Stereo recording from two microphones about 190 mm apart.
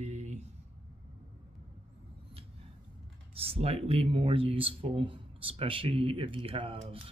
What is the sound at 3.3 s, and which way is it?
Speech, 30° right (ahead or behind).